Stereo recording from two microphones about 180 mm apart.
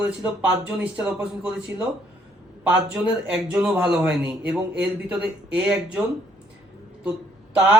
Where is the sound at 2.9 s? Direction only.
5° right (ahead or behind).